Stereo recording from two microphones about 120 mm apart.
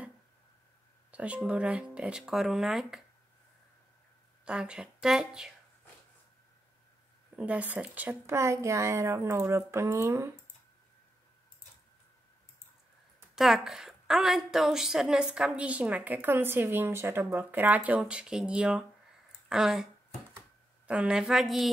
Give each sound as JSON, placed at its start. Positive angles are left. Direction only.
{"t": 1.1, "sound": "speech", "side_deg": -10}
{"t": 4.5, "sound": "a woman's voice", "side_deg": -10}
{"t": 7.3, "sound": "speech", "side_deg": -10}
{"t": 13.4, "sound": "a woman's voice", "side_deg": 0}